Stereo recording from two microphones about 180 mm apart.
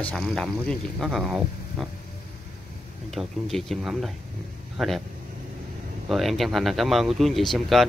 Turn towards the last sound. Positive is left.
turn(degrees=0)  # may be behind; listen again after turning